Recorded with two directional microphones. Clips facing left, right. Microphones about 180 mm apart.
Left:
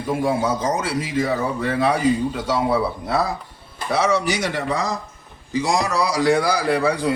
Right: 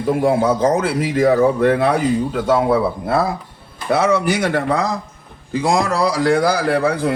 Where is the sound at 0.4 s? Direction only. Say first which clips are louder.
Right 6 dB; 60° right (ahead or behind).